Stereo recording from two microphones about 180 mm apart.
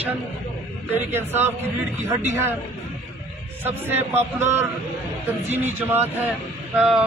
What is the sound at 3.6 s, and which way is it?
A man's voice, 10° right (ahead or behind).